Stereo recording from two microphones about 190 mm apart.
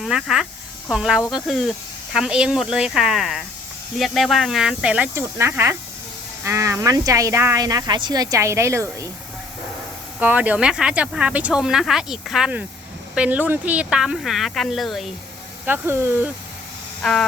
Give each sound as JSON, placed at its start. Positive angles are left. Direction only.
{"t": 0.0, "sound": "speech", "side_deg": -5}
{"t": 10.2, "sound": "speech", "side_deg": -10}
{"t": 15.6, "sound": "speech", "side_deg": -10}
{"t": 17.0, "sound": "a sound", "side_deg": 0}